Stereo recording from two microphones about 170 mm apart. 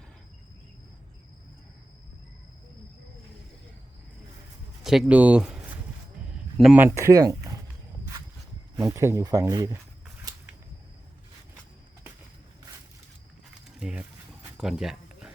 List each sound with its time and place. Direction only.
4.8 s speech: centre (ahead or behind); by 7.6 s 20° right (ahead or behind)
8.7 s speech: 15° right (ahead or behind)
13.7 s mechanisms: 5° right (ahead or behind)
14.6 s a sound: 5° right (ahead or behind)